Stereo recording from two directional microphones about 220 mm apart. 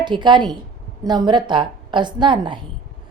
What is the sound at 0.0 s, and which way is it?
A woman's voice, 20° right (ahead or behind).